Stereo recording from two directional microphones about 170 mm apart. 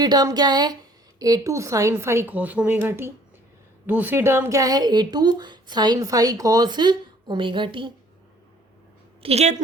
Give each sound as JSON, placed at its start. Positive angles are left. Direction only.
{"t": 0.0, "sound": "a woman's voice", "side_deg": -20}
{"t": 9.2, "sound": "a woman's voice", "side_deg": -40}